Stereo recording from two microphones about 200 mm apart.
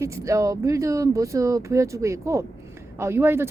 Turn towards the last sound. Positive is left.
turn(degrees=-10)  # may be behind; listen again after turning